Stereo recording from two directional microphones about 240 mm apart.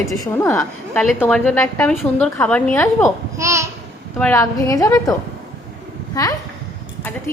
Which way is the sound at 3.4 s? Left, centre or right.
Centre.